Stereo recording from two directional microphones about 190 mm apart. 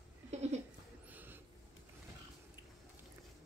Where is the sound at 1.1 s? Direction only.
10° right (ahead or behind).